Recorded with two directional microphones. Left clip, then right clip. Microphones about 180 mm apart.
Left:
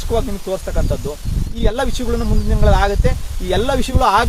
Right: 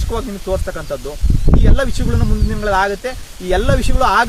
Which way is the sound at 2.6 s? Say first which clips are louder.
Right 1 dB; 20° right (ahead or behind).